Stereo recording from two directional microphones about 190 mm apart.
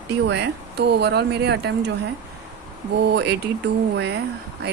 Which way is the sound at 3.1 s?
60° right (ahead or behind).